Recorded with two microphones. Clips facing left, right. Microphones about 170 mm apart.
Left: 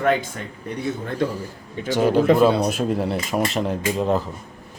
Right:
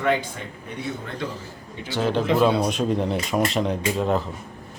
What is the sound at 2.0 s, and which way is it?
Speech, 10° left (ahead or behind).